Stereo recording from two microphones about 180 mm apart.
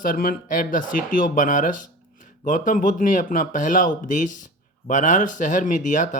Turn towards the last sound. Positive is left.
turn(degrees=45)  # may be behind; listen again after turning